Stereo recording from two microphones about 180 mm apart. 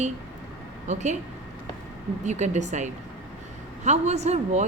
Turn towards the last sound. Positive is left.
turn(degrees=-40)  # may be behind; listen again after turning